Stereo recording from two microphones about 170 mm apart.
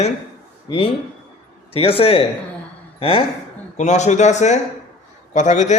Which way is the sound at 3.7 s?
45° left (ahead or behind).